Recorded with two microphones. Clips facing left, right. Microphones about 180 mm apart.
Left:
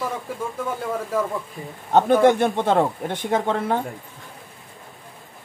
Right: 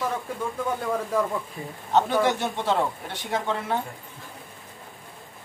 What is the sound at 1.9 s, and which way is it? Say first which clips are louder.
A man's voice: left 6 dB; 50° left (ahead or behind).